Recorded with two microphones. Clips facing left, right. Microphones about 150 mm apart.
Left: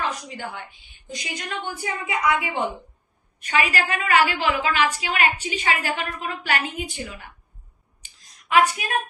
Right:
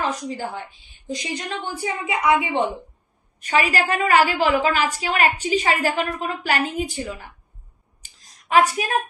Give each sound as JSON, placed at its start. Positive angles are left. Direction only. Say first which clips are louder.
{"t": 0.0, "sound": "a woman's voice", "louder": "right 4 dB", "side_deg": -35}
{"t": 3.3, "sound": "a woman's voice", "louder": "right 3 dB", "side_deg": -35}
{"t": 8.0, "sound": "a sound", "louder": "right 1 dB", "side_deg": -35}